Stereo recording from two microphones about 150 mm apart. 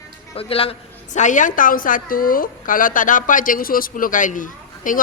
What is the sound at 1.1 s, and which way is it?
A woman's voice, 55° left (ahead or behind).